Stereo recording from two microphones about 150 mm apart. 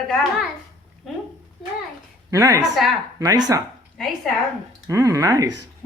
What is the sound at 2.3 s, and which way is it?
Speech, 20° right (ahead or behind).